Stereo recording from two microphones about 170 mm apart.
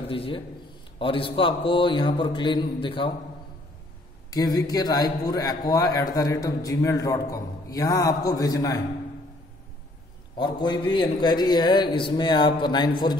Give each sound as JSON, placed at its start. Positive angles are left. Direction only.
{"t": 0.1, "sound": "a man's voice", "side_deg": 30}
{"t": 4.3, "sound": "a man's voice", "side_deg": 20}
{"t": 10.3, "sound": "a man's voice", "side_deg": 25}